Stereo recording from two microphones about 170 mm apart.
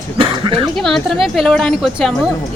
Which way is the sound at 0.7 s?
Centre (ahead or behind).